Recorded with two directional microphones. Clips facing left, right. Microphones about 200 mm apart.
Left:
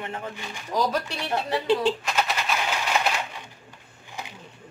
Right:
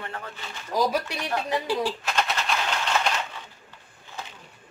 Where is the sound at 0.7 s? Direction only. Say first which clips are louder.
Right 1 dB; 10° right (ahead or behind).